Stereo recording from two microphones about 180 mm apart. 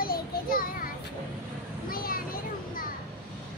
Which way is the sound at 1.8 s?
55° left (ahead or behind).